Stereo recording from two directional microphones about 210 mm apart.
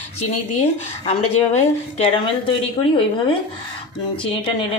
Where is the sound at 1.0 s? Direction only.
30° left (ahead or behind).